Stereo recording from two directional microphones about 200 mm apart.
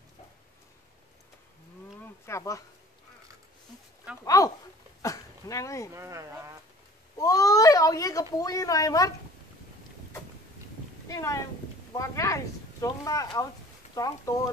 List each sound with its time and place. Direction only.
2.2 s speech: 15° left (ahead or behind)
4.2 s a sound: 15° left (ahead or behind)
5.0 s dog: 15° left (ahead or behind)
5.9 s speech: 15° right (ahead or behind)
7.2 s speech: 15° left (ahead or behind)
11.1 s speech: 15° left (ahead or behind)